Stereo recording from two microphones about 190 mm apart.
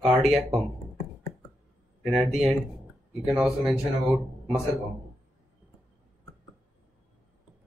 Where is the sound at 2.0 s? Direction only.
Centre (ahead or behind).